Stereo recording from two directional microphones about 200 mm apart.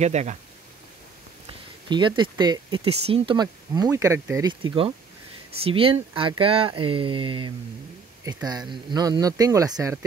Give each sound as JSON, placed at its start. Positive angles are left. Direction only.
{"t": 0.0, "sound": "speech", "side_deg": -35}
{"t": 1.9, "sound": "speech", "side_deg": -25}